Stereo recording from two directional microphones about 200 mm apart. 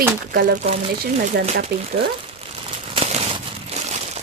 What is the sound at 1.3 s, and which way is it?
Speech, 55° right (ahead or behind).